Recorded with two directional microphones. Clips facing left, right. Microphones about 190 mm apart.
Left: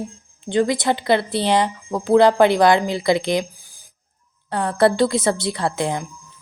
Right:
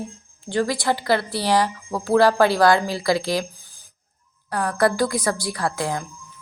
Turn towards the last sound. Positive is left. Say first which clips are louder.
# left 2 dB
turn(degrees=20)  # may be behind; listen again after turning